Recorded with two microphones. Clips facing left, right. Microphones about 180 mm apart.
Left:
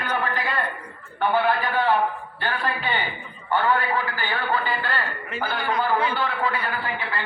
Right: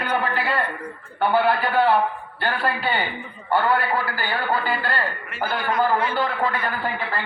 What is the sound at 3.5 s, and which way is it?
A man's voice, 40° right (ahead or behind).